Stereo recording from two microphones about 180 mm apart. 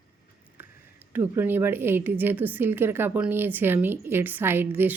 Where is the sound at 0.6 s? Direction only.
10° right (ahead or behind).